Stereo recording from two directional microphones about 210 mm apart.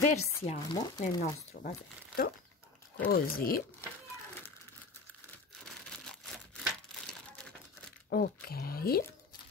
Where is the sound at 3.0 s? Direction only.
45° left (ahead or behind).